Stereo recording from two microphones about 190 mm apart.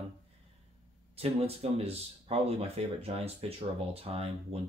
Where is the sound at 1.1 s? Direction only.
30° right (ahead or behind).